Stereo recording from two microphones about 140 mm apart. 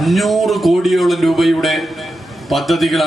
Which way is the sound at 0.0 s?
Centre (ahead or behind).